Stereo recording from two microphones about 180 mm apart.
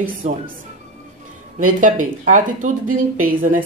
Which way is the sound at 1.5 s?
45° right (ahead or behind).